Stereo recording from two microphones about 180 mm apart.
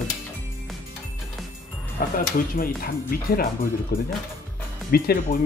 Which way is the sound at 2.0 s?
55° left (ahead or behind).